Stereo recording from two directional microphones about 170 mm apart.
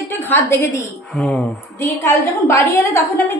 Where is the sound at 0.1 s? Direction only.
15° left (ahead or behind).